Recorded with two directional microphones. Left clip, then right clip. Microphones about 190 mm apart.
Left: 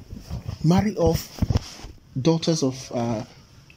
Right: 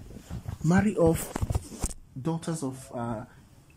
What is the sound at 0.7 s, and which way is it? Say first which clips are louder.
Speech: left 3 dB; 5° right (ahead or behind).